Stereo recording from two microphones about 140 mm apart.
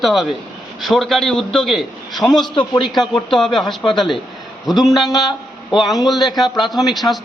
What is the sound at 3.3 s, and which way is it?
Speech, centre (ahead or behind).